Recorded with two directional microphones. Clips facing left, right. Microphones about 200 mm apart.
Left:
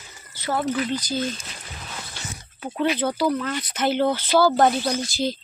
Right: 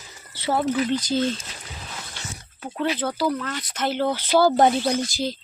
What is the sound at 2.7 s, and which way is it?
Speech, centre (ahead or behind).